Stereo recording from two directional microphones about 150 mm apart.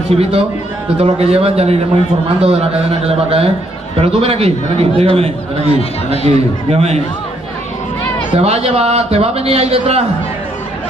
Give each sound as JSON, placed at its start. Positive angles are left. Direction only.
{"t": 0.1, "sound": "a man's voice", "side_deg": -40}
{"t": 8.4, "sound": "a man's voice", "side_deg": -45}